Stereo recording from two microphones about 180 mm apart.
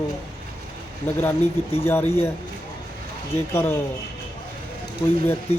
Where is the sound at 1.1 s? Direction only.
10° left (ahead or behind).